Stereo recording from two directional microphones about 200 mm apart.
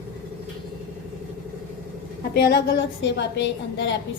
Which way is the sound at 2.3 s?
55° left (ahead or behind).